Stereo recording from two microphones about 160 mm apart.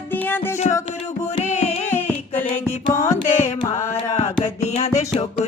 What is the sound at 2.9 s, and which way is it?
Music, 15° left (ahead or behind).